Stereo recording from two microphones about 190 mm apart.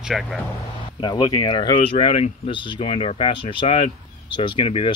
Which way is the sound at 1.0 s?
20° left (ahead or behind).